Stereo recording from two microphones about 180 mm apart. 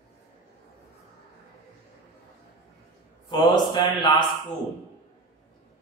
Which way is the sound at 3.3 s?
25° left (ahead or behind).